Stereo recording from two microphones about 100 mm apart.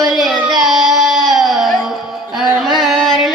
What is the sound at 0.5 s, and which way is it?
Music, 5° right (ahead or behind).